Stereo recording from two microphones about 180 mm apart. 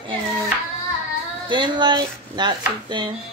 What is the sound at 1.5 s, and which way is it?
Speech, 25° right (ahead or behind).